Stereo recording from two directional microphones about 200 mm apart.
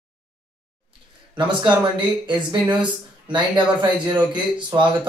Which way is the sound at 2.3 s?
20° right (ahead or behind).